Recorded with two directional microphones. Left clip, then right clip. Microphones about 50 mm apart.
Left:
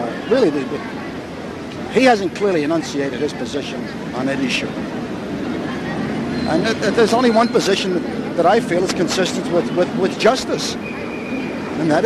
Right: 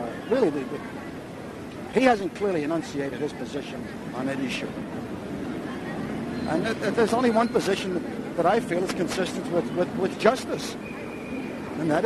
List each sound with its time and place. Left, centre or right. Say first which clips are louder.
0.3 s speech: left 8 dB; right
2.0 s speech: left 7 dB; right
6.3 s speech: left 8 dB; right